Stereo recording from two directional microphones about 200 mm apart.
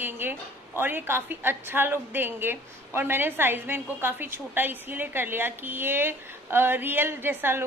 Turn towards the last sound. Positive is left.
turn(degrees=-10)  # may be behind; listen again after turning